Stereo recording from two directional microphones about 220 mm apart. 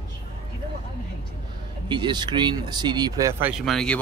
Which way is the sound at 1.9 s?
20° right (ahead or behind).